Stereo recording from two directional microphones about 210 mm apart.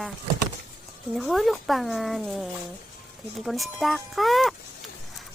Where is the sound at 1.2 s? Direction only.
Centre (ahead or behind).